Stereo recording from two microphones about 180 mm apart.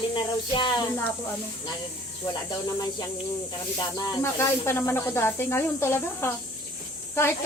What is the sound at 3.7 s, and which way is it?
Speech, 25° left (ahead or behind).